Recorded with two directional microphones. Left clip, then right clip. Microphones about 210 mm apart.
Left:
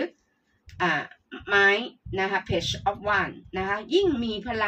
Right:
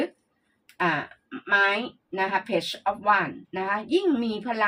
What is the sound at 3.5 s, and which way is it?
Speech, 25° right (ahead or behind).